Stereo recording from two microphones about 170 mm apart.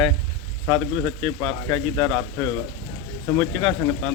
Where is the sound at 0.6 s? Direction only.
5° left (ahead or behind).